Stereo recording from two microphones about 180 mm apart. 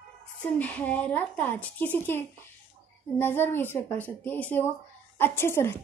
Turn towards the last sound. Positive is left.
turn(degrees=15)  # may be behind; listen again after turning